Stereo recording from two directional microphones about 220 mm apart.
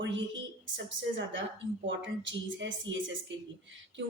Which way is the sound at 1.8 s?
60° right (ahead or behind).